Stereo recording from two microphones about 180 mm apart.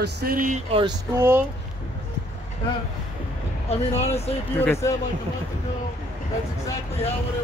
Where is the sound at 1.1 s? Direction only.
15° right (ahead or behind).